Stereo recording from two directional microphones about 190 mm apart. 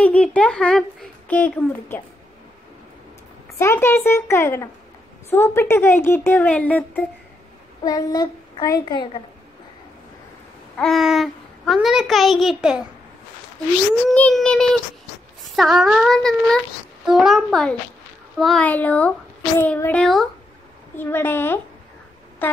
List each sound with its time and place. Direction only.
0.0 s speech: 5° left (ahead or behind)
3.5 s speech: 15° left (ahead or behind)
7.8 s a child's voice: 20° left (ahead or behind)
10.8 s a child's voice: centre (ahead or behind)
14.1 s a child's voice: 5° left (ahead or behind)